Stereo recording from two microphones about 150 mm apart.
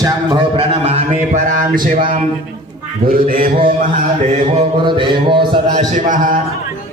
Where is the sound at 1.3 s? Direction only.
60° right (ahead or behind).